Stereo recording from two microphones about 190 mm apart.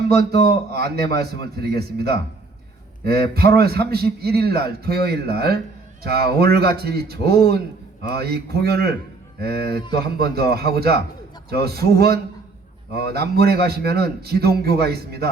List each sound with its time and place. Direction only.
0.2 s a man's voice: 55° right (ahead or behind)
9.7 s speech: 25° left (ahead or behind)
10.3 s a man's voice: 55° right (ahead or behind)